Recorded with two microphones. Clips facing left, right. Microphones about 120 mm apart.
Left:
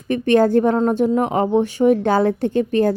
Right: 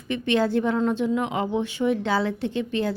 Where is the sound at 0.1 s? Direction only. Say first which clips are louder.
Left 8 dB; 45° left (ahead or behind).